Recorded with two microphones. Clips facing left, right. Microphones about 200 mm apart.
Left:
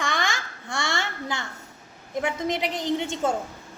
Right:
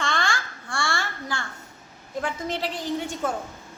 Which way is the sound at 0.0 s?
15° left (ahead or behind).